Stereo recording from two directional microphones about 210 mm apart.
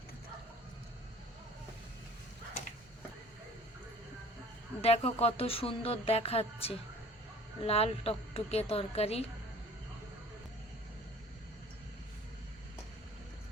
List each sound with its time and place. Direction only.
4.8 s speech: 30° left (ahead or behind)